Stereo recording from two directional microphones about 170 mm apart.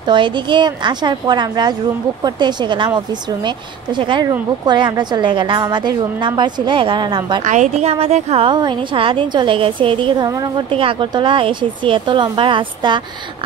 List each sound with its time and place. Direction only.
0.0 s a woman's voice: 30° right (ahead or behind)
7.4 s a woman's voice: 45° right (ahead or behind); by 13.0 s 30° right (ahead or behind)